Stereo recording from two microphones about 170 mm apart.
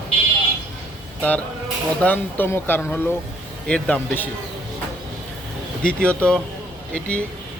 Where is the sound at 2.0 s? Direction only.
10° left (ahead or behind).